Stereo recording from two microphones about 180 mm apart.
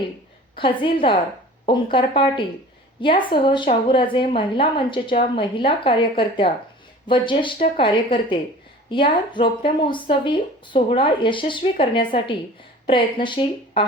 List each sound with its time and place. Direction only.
0.5 s speech: 30° left (ahead or behind)